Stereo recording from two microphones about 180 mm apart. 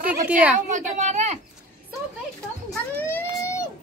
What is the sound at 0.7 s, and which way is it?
Speech, 40° right (ahead or behind).